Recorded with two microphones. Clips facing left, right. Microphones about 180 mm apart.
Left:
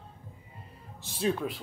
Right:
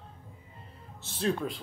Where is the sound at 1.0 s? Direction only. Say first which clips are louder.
Left 1 dB; 5° left (ahead or behind).